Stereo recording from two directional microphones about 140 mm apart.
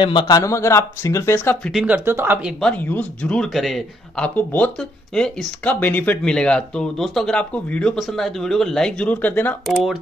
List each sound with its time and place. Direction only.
0.0 s speech: 35° left (ahead or behind); by 1.7 s 15° left (ahead or behind)
1.7 s speech: 5° right (ahead or behind)
2.0 s speech: 15° right (ahead or behind)
2.6 s speech: 10° left (ahead or behind)
4.4 s speech: 10° left (ahead or behind)